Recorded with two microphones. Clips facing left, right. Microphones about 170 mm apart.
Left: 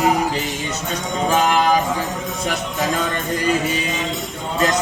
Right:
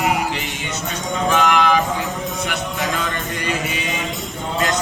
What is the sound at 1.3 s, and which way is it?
Music, 35° left (ahead or behind).